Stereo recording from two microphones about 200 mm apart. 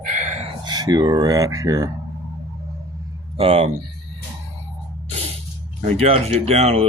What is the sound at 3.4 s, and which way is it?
Speech, 30° right (ahead or behind).